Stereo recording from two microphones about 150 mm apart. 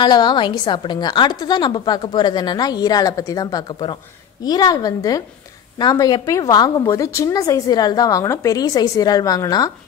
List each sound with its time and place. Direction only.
0.0 s a woman's voice: 30° left (ahead or behind)